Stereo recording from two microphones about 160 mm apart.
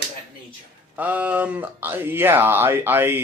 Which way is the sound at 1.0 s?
10° right (ahead or behind).